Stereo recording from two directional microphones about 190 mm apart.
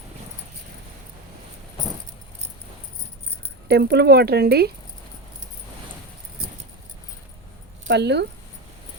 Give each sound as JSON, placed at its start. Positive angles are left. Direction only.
{"t": 3.7, "sound": "speech", "side_deg": -60}
{"t": 7.9, "sound": "speech", "side_deg": -65}